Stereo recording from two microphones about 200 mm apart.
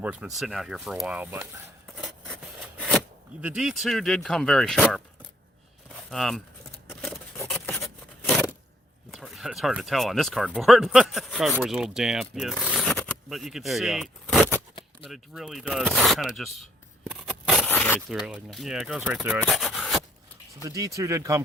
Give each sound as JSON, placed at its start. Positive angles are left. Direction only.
{"t": 0.0, "sound": "speech", "side_deg": -5}
{"t": 2.7, "sound": "a sound", "side_deg": 0}
{"t": 3.4, "sound": "speech", "side_deg": -5}
{"t": 6.1, "sound": "speech", "side_deg": 0}
{"t": 7.4, "sound": "scrape", "side_deg": 0}
{"t": 9.1, "sound": "speech", "side_deg": 0}
{"t": 17.7, "sound": "zipper", "side_deg": 10}
{"t": 18.3, "sound": "speech", "side_deg": 0}
{"t": 20.6, "sound": "speech", "side_deg": -15}